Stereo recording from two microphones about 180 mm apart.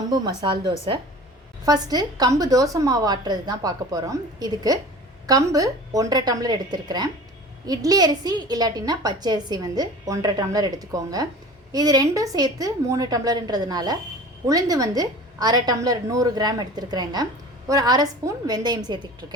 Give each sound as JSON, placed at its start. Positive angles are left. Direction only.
{"t": 0.1, "sound": "a woman's voice", "side_deg": -25}